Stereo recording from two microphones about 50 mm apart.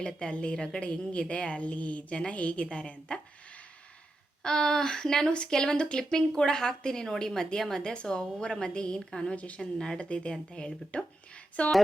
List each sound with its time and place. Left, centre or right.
0.0 s a woman's voice: centre
4.4 s speech: centre
9.3 s a woman's voice: left
9.6 s a woman's voice: centre